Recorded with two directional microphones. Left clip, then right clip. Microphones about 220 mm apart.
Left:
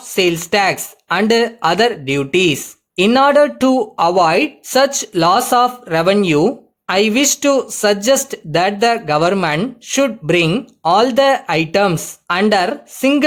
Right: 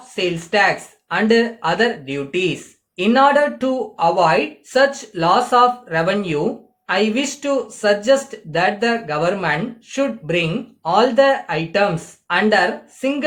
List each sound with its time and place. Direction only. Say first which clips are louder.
0.2 s speech: left 3 dB; 50° left (ahead or behind)